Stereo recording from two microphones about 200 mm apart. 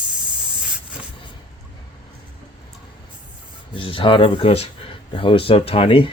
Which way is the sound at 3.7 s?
25° left (ahead or behind).